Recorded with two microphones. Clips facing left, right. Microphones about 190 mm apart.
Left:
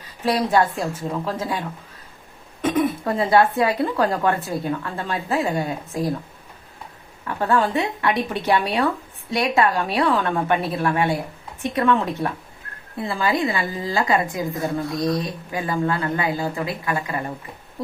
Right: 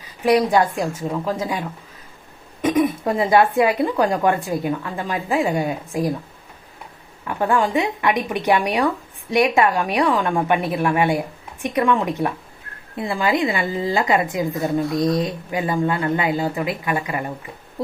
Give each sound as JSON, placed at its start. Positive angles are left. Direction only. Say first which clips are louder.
{"t": 0.3, "sound": "a woman's voice", "louder": "right 3 dB", "side_deg": -15}
{"t": 7.3, "sound": "a woman's voice", "louder": "right 1 dB", "side_deg": -15}